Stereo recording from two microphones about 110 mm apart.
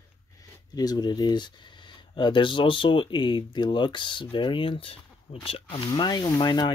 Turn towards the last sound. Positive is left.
turn(degrees=40)  # may be behind; listen again after turning